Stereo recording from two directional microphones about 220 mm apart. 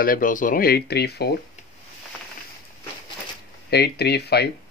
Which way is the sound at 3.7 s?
50° left (ahead or behind).